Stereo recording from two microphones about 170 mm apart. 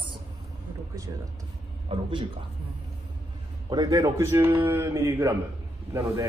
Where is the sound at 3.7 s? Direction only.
20° right (ahead or behind).